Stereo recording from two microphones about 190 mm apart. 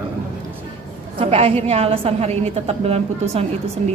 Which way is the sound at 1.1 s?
30° right (ahead or behind).